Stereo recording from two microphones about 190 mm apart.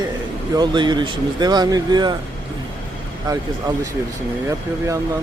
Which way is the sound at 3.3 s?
20° right (ahead or behind).